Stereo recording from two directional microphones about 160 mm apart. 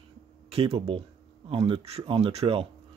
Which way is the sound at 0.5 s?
40° right (ahead or behind).